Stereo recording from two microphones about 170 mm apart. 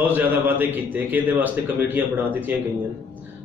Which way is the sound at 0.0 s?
10° right (ahead or behind).